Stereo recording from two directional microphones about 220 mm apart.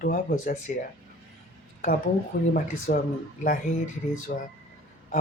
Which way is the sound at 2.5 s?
40° left (ahead or behind).